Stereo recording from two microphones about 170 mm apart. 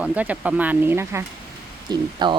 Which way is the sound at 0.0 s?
10° right (ahead or behind).